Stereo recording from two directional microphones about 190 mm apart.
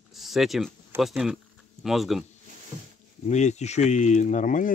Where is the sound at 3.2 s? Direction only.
35° left (ahead or behind).